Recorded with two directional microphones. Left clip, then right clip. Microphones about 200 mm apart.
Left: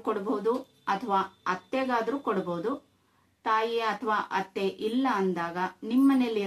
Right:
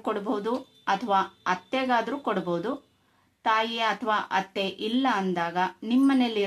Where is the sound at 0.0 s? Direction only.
50° right (ahead or behind).